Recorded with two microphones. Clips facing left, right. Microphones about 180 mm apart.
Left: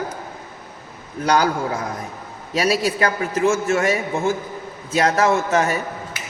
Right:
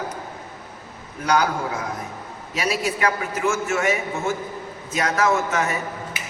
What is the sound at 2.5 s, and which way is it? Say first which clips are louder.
A man's voice: left 5 dB; 35° left (ahead or behind).